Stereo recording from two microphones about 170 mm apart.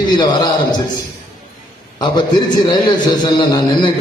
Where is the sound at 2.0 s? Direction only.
25° left (ahead or behind).